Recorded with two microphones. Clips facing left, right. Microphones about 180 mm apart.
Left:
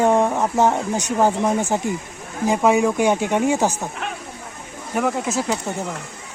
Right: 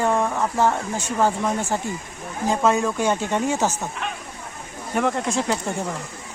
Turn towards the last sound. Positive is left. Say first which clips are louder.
# left 1 dB
turn(degrees=5)  # may be behind; listen again after turning